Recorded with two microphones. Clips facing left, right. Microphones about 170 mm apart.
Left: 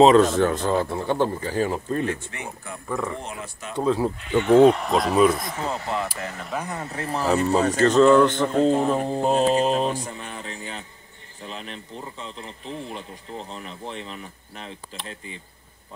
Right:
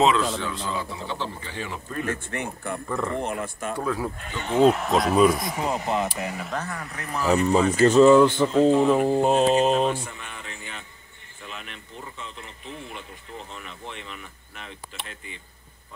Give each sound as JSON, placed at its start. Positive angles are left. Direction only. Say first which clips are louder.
{"t": 0.0, "sound": "speech", "louder": "left 7 dB", "side_deg": 45}
{"t": 2.0, "sound": "speech", "louder": "even", "side_deg": -55}
{"t": 2.9, "sound": "speech", "louder": "left 1 dB", "side_deg": 5}
{"t": 3.2, "sound": "speech", "louder": "right 6 dB", "side_deg": -55}
{"t": 3.7, "sound": "speech", "louder": "left 7 dB", "side_deg": 25}
{"t": 4.6, "sound": "speech", "louder": "left 2 dB", "side_deg": -5}
{"t": 5.5, "sound": "speech", "louder": "right 2 dB", "side_deg": -15}
{"t": 6.6, "sound": "speech", "louder": "left 4 dB", "side_deg": 25}
{"t": 7.7, "sound": "speech", "louder": "right 1 dB", "side_deg": -10}
{"t": 9.8, "sound": "speech", "louder": "right 1 dB", "side_deg": 40}